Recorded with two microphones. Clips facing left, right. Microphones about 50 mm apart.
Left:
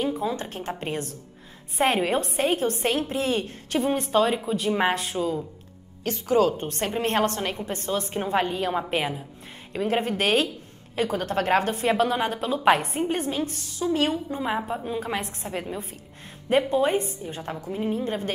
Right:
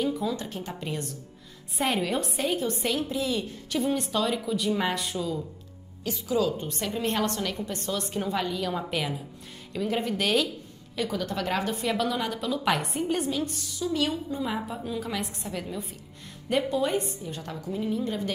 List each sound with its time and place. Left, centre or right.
0.0 s a woman's voice: left
14.5 s a woman's voice: centre
15.0 s a woman's voice: left
16.7 s a woman's voice: left